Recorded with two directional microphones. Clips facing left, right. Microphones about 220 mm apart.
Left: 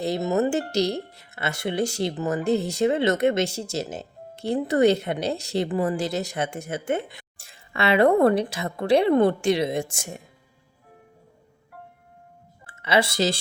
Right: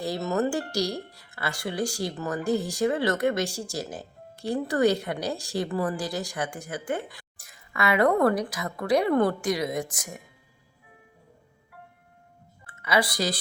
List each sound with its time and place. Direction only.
0.0 s speech: 20° left (ahead or behind)
12.6 s speech: 25° left (ahead or behind)